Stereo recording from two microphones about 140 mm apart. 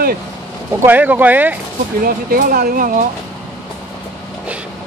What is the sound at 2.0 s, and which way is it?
Speech, 90° right.